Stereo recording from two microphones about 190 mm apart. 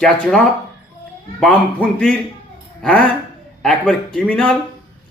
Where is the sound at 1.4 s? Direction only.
5° left (ahead or behind).